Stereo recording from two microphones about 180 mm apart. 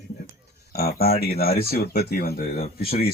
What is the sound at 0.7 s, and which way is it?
Speech, 60° left (ahead or behind).